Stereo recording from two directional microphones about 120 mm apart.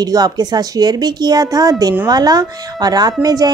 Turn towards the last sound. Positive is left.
turn(degrees=-30)  # may be behind; listen again after turning